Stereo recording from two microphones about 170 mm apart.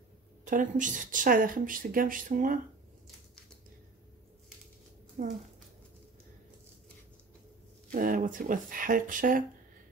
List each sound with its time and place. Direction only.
0.5 s a woman's voice: 50° right (ahead or behind)
5.2 s a woman's voice: 50° right (ahead or behind)
7.9 s a woman's voice: 50° right (ahead or behind)